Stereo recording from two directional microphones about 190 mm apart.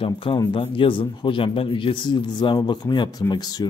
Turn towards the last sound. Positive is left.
turn(degrees=20)  # may be behind; listen again after turning